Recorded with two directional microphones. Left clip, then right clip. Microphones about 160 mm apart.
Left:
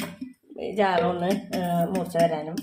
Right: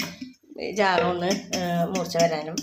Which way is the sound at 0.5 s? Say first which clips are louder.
Right 1 dB; centre (ahead or behind).